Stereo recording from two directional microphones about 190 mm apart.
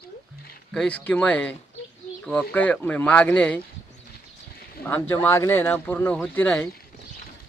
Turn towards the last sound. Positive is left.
turn(degrees=0)  # may be behind; listen again after turning